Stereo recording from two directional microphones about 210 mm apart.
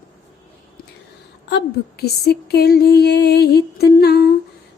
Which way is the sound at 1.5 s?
50° left (ahead or behind).